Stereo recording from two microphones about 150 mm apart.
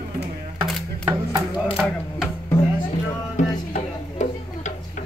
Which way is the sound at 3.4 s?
55° left (ahead or behind).